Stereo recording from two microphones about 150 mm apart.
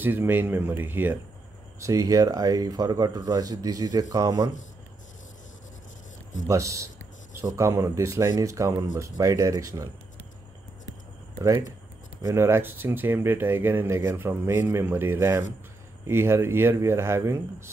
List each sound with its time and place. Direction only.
0.0 s speech: 15° right (ahead or behind)
6.4 s speech: 20° right (ahead or behind)
11.3 s speech: 20° right (ahead or behind)